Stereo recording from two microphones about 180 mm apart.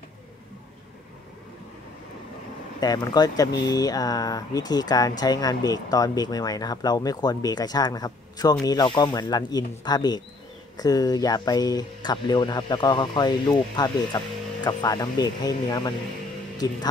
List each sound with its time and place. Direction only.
2.8 s speech: 20° left (ahead or behind)